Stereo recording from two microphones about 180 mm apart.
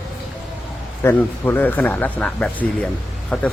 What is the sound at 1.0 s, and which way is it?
Speech, 10° left (ahead or behind).